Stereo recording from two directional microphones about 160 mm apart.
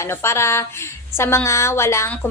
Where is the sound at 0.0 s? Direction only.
15° left (ahead or behind).